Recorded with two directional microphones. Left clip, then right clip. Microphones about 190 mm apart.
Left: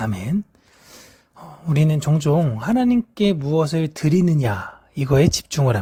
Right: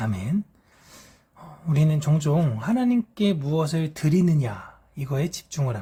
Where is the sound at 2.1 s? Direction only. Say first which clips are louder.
Left 7 dB; 30° left (ahead or behind).